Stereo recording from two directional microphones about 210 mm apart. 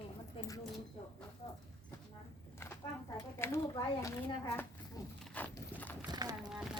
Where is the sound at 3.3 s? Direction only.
10° left (ahead or behind).